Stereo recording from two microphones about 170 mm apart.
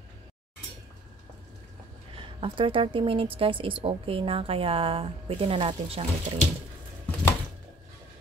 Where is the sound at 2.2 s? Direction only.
30° right (ahead or behind).